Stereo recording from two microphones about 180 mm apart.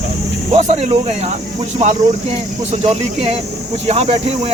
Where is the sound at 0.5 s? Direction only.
40° right (ahead or behind).